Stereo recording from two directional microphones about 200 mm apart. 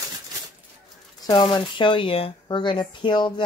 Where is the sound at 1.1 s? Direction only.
20° left (ahead or behind).